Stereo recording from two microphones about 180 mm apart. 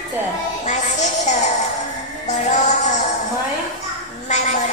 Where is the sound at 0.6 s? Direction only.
40° left (ahead or behind).